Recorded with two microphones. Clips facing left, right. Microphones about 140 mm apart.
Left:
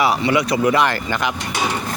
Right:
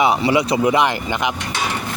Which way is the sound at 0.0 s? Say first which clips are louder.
Right 1 dB; 25° right (ahead or behind).